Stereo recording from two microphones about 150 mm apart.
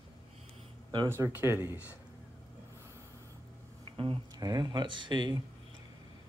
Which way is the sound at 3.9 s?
35° right (ahead or behind).